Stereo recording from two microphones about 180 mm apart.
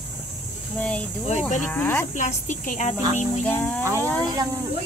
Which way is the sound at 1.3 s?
40° left (ahead or behind).